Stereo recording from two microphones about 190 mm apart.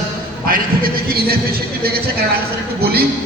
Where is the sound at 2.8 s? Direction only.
55° right (ahead or behind).